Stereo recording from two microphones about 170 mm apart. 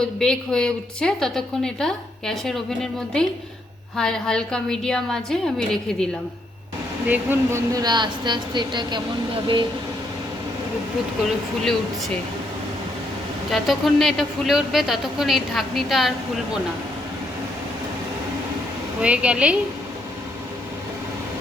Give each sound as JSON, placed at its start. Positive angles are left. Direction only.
{"t": 0.0, "sound": "a woman's voice", "side_deg": 5}
{"t": 7.1, "sound": "a woman's voice", "side_deg": -15}
{"t": 13.5, "sound": "a woman's voice", "side_deg": 0}
{"t": 19.0, "sound": "a woman's voice", "side_deg": -5}